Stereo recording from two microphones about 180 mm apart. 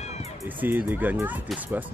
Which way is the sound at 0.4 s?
10° right (ahead or behind).